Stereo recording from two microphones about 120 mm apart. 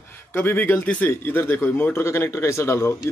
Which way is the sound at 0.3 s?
20° left (ahead or behind).